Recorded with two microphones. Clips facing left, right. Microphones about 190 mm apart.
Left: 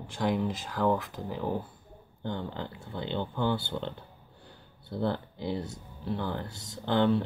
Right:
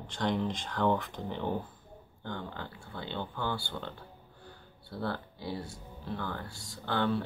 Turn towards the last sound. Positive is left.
turn(degrees=20)  # may be behind; listen again after turning